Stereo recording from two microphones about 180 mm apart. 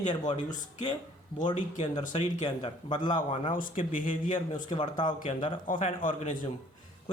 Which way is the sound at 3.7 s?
50° left (ahead or behind).